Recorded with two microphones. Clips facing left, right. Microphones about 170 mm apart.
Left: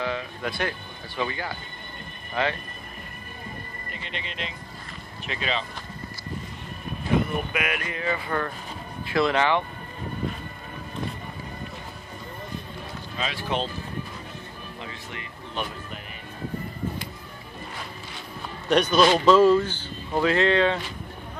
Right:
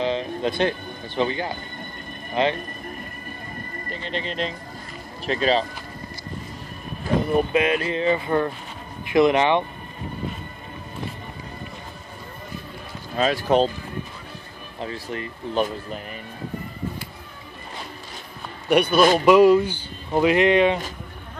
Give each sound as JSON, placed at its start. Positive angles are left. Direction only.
{"t": 0.0, "sound": "speech", "side_deg": -25}
{"t": 3.9, "sound": "speech", "side_deg": -35}
{"t": 7.3, "sound": "speech", "side_deg": -30}
{"t": 13.1, "sound": "speech", "side_deg": -45}
{"t": 14.8, "sound": "speech", "side_deg": -40}
{"t": 18.7, "sound": "speech", "side_deg": -10}